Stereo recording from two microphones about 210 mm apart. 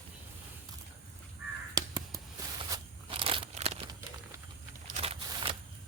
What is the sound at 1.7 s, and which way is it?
Crow, 15° right (ahead or behind).